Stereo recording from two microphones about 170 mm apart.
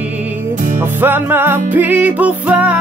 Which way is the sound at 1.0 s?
10° right (ahead or behind).